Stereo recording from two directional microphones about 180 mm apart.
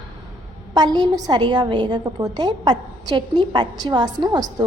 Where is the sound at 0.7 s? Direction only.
25° right (ahead or behind).